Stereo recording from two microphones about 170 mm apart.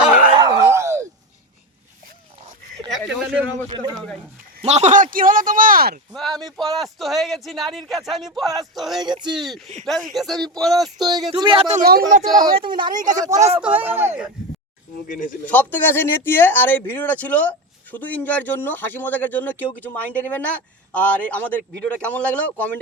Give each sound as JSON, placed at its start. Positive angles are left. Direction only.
{"t": 0.3, "sound": "a sound", "side_deg": -20}
{"t": 4.6, "sound": "speech", "side_deg": -40}
{"t": 6.1, "sound": "speech", "side_deg": 0}
{"t": 9.0, "sound": "speech", "side_deg": -25}
{"t": 9.3, "sound": "speech", "side_deg": 0}
{"t": 10.8, "sound": "speech", "side_deg": -25}
{"t": 11.7, "sound": "speech", "side_deg": -60}
{"t": 12.2, "sound": "speech", "side_deg": -30}
{"t": 15.0, "sound": "speech", "side_deg": 50}
{"t": 15.4, "sound": "speech", "side_deg": 10}